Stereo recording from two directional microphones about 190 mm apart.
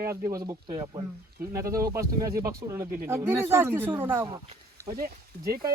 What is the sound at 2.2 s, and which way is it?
Speech, 15° right (ahead or behind).